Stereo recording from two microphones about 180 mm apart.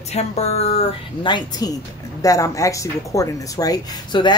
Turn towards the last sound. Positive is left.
turn(degrees=25)  # may be behind; listen again after turning